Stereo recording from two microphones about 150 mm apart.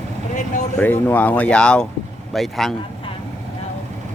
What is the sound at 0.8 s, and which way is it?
A man's voice, 10° left (ahead or behind).